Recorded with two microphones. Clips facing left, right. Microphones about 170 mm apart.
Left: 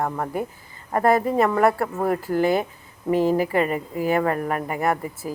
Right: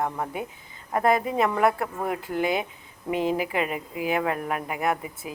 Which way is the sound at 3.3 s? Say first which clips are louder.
Left 6 dB; 5° right (ahead or behind).